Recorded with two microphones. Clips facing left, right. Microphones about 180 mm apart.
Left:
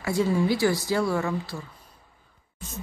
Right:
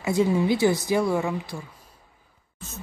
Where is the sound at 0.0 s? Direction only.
20° right (ahead or behind).